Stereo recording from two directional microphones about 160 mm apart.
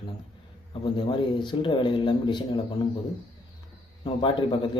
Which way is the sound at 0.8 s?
30° left (ahead or behind).